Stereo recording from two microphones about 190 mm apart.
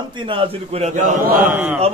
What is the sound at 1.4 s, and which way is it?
Speech, 10° right (ahead or behind).